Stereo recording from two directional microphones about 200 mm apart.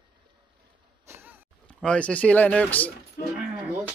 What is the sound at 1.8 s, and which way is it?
Speech, 5° left (ahead or behind).